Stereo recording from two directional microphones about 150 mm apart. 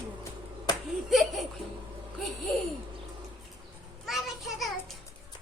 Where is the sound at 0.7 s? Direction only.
25° left (ahead or behind).